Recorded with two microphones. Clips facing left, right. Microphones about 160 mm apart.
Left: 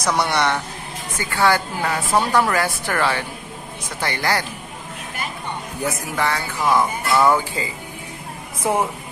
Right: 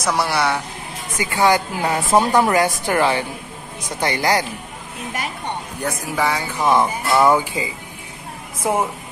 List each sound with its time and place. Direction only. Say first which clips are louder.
0.0 s a man's voice: even; 5° right (ahead or behind)
1.1 s speech: right 2 dB; 15° right (ahead or behind)
5.8 s speech: left 2 dB; centre (ahead or behind)
6.1 s speech: right 3 dB; 10° right (ahead or behind)
6.6 s speech: right 2 dB; 25° right (ahead or behind)